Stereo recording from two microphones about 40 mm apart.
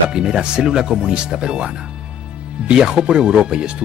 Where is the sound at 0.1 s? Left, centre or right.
Right.